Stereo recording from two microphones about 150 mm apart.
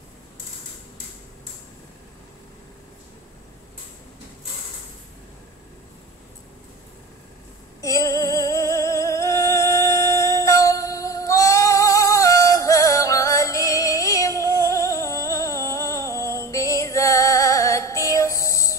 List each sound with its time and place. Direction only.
7.8 s music: 20° left (ahead or behind)